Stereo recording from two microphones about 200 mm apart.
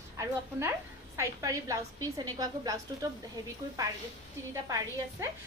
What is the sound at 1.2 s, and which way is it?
A woman's voice, 15° right (ahead or behind).